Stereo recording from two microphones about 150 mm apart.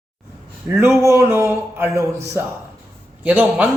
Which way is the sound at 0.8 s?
15° right (ahead or behind).